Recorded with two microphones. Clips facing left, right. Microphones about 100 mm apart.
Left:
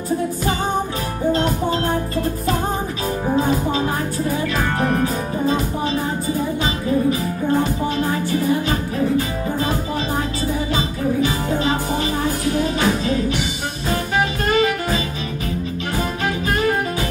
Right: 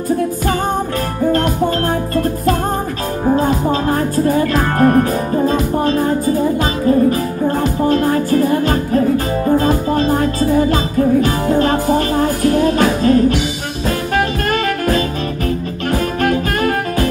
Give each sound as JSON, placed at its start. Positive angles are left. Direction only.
{"t": 1.3, "sound": "music", "side_deg": -55}
{"t": 4.4, "sound": "music", "side_deg": -50}
{"t": 6.6, "sound": "music", "side_deg": -50}
{"t": 10.7, "sound": "music", "side_deg": -50}
{"t": 14.1, "sound": "saxophone", "side_deg": -55}
{"t": 15.9, "sound": "music", "side_deg": -55}